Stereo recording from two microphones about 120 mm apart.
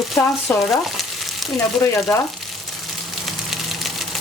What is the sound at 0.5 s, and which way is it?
Speech, 15° left (ahead or behind).